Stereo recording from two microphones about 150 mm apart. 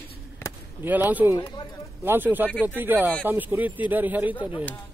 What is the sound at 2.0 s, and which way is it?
Speech, 15° right (ahead or behind).